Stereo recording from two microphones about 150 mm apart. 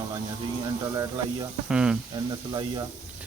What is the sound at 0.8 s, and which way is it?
Speech, 25° right (ahead or behind).